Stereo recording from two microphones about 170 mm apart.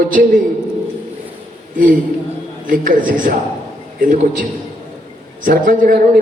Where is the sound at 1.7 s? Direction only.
55° right (ahead or behind).